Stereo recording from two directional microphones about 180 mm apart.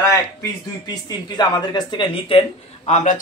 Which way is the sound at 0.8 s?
25° left (ahead or behind).